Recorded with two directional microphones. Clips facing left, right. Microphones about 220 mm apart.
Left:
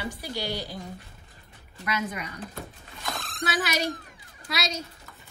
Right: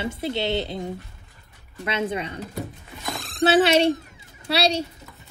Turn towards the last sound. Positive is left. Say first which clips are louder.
# right 10 dB
turn(degrees=-30)  # may be behind; listen again after turning